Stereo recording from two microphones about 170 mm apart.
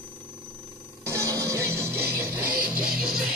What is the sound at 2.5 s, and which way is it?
Music, 60° right (ahead or behind).